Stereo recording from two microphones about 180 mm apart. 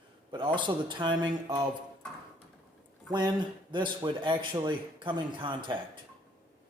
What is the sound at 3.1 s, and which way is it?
Speech, 25° right (ahead or behind).